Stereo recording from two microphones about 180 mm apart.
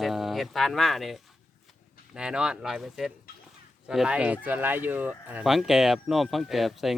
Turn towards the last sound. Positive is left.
turn(degrees=0)  # may be behind; listen again after turning